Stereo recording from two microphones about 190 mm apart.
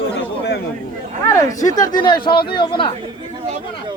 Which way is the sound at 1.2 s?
15° left (ahead or behind).